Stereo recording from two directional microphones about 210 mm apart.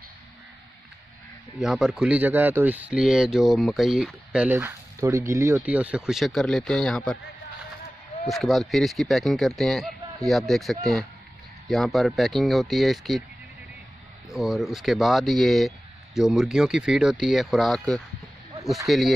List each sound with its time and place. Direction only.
1.6 s speech: centre (ahead or behind)
8.3 s speech: centre (ahead or behind)
14.3 s speech: centre (ahead or behind)